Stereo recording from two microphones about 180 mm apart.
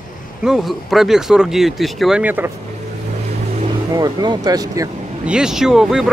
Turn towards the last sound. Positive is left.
turn(degrees=-5)  # may be behind; listen again after turning